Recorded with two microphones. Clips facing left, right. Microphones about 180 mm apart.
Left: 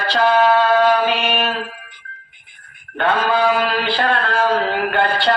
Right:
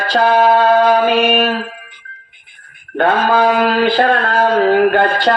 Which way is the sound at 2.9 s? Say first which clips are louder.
Right 4 dB; 45° right (ahead or behind).